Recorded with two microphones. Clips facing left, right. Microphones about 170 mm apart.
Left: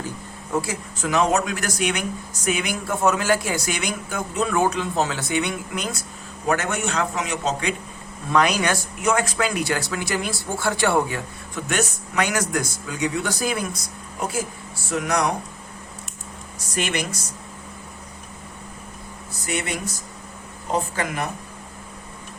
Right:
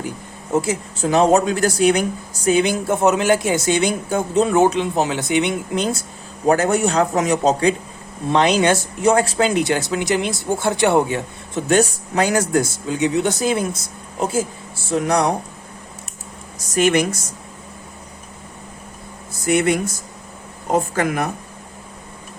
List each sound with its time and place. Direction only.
0.5 s speech: 25° right (ahead or behind)
8.3 s speech: 25° right (ahead or behind)
14.8 s speech: 30° right (ahead or behind)
16.7 s speech: 50° right (ahead or behind)
19.5 s speech: 50° right (ahead or behind)